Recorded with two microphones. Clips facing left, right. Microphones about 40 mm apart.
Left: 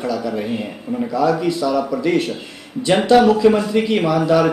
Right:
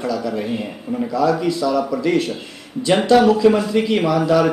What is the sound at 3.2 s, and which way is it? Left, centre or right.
A man's voice, centre.